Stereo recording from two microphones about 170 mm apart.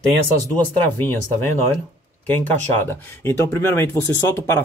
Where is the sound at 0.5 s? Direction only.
10° left (ahead or behind).